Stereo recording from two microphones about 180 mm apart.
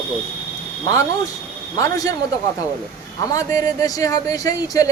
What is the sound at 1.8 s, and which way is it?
Speech, 20° left (ahead or behind).